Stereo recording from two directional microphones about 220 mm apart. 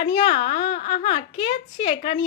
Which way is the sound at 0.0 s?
25° left (ahead or behind).